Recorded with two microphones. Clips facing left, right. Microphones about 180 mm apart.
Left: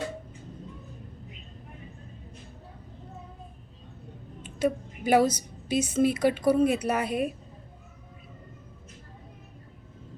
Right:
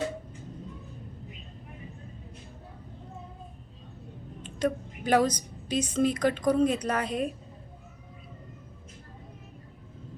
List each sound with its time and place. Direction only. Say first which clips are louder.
4.4 s a woman's voice: left 2 dB; 10° left (ahead or behind)